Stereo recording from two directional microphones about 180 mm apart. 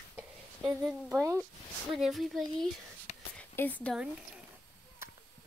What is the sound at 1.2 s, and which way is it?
Speech, 20° right (ahead or behind).